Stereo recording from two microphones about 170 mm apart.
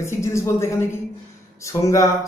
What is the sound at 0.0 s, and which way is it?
Speech, 15° left (ahead or behind).